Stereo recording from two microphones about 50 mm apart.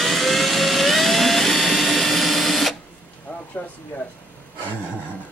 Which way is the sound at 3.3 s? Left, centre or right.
Left.